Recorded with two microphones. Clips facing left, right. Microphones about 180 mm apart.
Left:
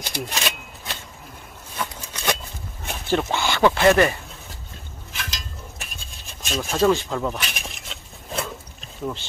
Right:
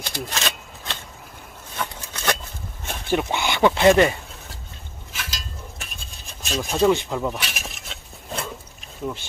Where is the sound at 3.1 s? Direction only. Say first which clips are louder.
Even; 15° right (ahead or behind).